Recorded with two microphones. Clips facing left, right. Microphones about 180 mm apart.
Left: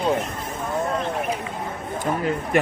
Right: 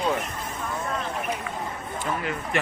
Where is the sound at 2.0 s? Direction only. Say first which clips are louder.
Left 6 dB; 40° left (ahead or behind).